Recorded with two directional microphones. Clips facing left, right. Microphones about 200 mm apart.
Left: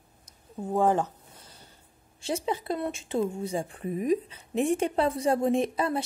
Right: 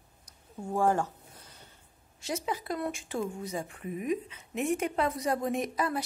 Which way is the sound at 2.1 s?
30° left (ahead or behind).